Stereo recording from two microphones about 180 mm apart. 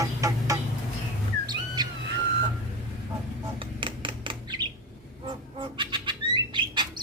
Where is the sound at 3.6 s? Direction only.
25° right (ahead or behind).